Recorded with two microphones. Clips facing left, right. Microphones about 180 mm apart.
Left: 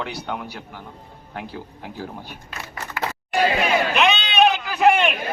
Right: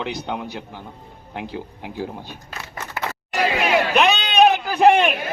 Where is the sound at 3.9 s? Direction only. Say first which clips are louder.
Right 2 dB; 40° right (ahead or behind).